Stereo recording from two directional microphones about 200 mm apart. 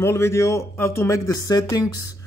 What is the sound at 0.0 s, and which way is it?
Speech, 15° left (ahead or behind).